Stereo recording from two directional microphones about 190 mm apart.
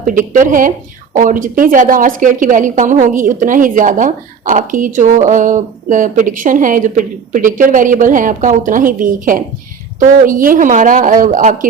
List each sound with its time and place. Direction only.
0.0 s a woman's voice: 45° right (ahead or behind)